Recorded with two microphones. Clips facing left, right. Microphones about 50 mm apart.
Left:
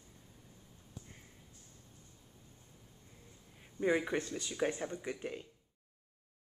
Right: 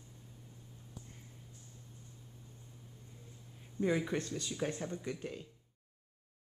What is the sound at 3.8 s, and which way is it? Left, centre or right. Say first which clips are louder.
Speech: left 1 dB; centre.